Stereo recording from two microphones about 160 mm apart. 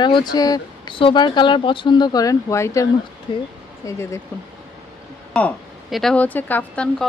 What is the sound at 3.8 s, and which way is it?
Speech, 20° left (ahead or behind).